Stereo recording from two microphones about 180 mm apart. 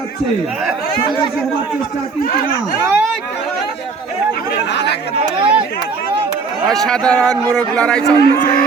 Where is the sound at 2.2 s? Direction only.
55° left (ahead or behind).